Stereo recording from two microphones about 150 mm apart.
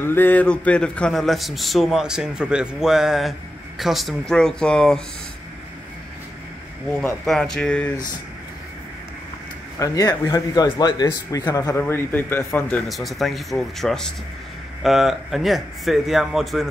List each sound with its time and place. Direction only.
0.0 s a man's voice: 15° left (ahead or behind)
7.2 s speech: 5° left (ahead or behind)
9.8 s speech: 20° left (ahead or behind)
12.8 s a man's voice: centre (ahead or behind)